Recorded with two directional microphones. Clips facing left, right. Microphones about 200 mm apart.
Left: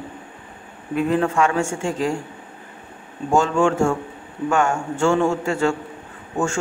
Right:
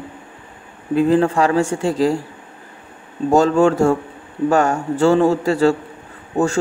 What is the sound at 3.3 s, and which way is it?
A man's voice, 40° right (ahead or behind).